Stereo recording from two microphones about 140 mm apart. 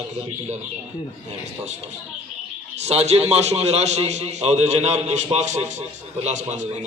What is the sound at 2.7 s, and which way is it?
A man's voice, 50° right (ahead or behind).